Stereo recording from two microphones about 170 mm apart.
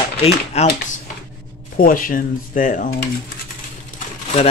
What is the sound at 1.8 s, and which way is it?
Speech, 55° left (ahead or behind).